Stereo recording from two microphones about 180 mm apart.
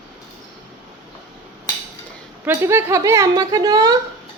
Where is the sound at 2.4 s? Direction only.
15° right (ahead or behind).